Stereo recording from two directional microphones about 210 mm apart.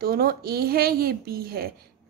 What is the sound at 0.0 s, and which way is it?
A woman's voice, 45° right (ahead or behind).